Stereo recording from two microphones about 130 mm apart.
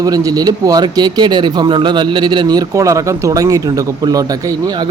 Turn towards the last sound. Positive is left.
turn(degrees=-30)  # may be behind; listen again after turning